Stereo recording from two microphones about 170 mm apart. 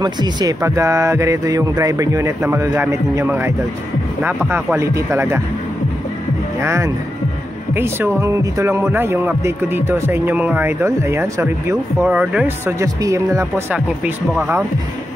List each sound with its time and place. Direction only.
0.0 s speech: 25° right (ahead or behind)
6.6 s speech: 15° right (ahead or behind)
13.7 s speech: 5° right (ahead or behind)